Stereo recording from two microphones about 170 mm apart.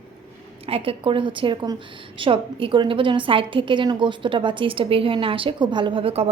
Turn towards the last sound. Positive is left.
turn(degrees=-30)  # may be behind; listen again after turning